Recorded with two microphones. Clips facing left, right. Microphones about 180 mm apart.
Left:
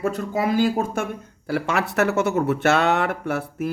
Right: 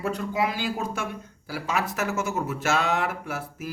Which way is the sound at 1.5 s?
70° left (ahead or behind).